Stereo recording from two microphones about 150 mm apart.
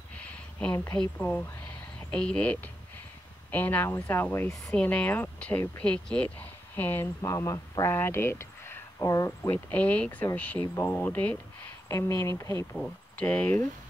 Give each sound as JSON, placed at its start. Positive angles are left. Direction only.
{"t": 0.2, "sound": "a sound", "side_deg": 10}
{"t": 1.1, "sound": "speech", "side_deg": 10}
{"t": 12.7, "sound": "speech", "side_deg": 5}